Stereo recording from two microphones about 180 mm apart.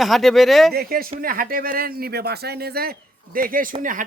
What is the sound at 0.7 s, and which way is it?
Speech, 55° right (ahead or behind).